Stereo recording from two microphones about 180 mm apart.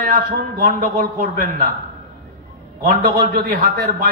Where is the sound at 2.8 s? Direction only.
55° right (ahead or behind).